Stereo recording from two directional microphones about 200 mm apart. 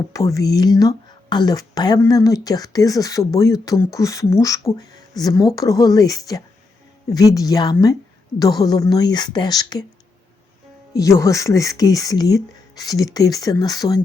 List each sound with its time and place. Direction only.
0.1 s a woman's voice: 15° left (ahead or behind)
10.9 s speech: 15° left (ahead or behind)